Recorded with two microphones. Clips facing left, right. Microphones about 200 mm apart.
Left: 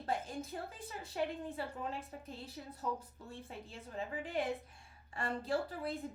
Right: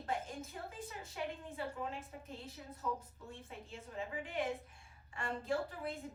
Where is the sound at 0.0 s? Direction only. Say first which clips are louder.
Left 2 dB; 35° left (ahead or behind).